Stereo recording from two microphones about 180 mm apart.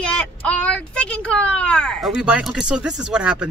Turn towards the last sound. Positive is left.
turn(degrees=-5)  # may be behind; listen again after turning